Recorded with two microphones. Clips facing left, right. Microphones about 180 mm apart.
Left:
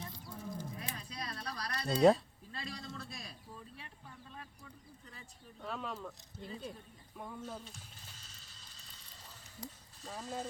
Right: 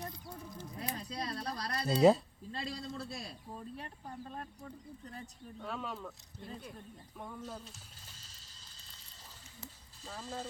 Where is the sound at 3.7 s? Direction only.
45° right (ahead or behind).